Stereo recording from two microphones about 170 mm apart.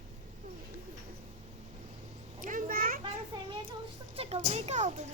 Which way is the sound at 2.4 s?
50° right (ahead or behind).